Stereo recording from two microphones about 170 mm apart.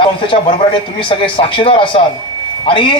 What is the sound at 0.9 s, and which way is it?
Speech, 30° left (ahead or behind).